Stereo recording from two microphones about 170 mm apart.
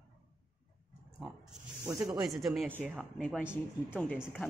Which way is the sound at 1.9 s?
25° right (ahead or behind).